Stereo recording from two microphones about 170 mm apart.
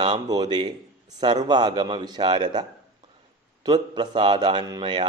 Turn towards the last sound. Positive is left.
turn(degrees=-25)  # may be behind; listen again after turning